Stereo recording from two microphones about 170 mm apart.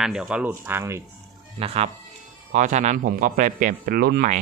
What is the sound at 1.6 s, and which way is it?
Speech, 35° right (ahead or behind).